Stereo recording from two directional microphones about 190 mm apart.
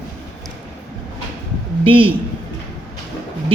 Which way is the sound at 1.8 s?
30° right (ahead or behind).